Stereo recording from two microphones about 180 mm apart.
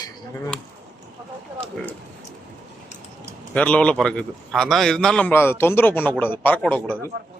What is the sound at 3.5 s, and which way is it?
A man's voice, 5° left (ahead or behind).